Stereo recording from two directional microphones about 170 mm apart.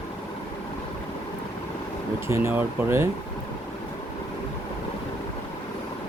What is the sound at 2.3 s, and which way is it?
Speech, 15° right (ahead or behind).